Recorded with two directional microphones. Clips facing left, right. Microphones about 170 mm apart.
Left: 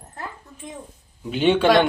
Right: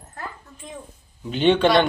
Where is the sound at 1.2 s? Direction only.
10° left (ahead or behind).